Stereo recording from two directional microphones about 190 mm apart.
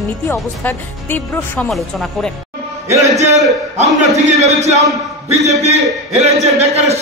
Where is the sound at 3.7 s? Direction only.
35° right (ahead or behind).